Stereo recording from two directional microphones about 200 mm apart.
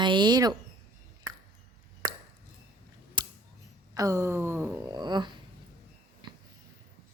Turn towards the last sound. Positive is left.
turn(degrees=-20)  # may be behind; listen again after turning